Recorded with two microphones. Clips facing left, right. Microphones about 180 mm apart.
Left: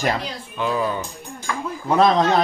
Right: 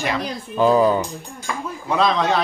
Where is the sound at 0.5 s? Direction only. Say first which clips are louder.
Right 8 dB; 35° right (ahead or behind).